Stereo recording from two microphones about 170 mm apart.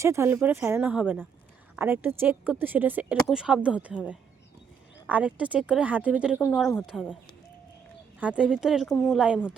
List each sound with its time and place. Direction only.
0.0 s speech: 15° right (ahead or behind); by 7.1 s centre (ahead or behind)
8.2 s speech: 5° right (ahead or behind)